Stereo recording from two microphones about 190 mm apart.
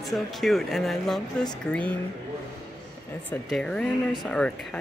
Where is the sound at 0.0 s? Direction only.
Centre (ahead or behind).